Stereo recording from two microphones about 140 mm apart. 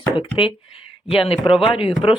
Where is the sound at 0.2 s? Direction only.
40° left (ahead or behind).